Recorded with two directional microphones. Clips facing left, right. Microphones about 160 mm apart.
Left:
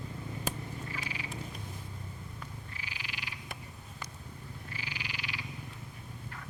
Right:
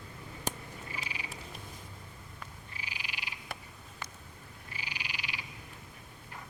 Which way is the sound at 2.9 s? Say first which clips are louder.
Right 1 dB; 15° right (ahead or behind).